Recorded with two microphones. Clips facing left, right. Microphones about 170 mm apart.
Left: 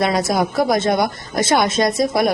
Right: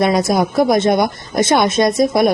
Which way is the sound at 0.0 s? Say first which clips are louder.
Right 3 dB; 20° right (ahead or behind).